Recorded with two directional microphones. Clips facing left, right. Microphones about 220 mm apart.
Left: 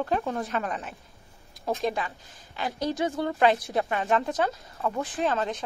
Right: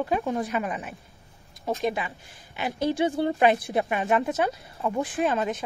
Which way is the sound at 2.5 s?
25° right (ahead or behind).